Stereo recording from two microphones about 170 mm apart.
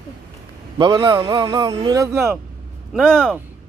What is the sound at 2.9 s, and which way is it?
Speech, 5° left (ahead or behind).